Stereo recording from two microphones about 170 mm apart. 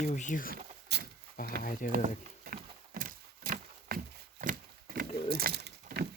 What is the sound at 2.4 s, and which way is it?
Horse, 60° right (ahead or behind).